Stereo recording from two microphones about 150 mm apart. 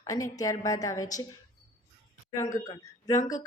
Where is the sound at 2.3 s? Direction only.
25° left (ahead or behind).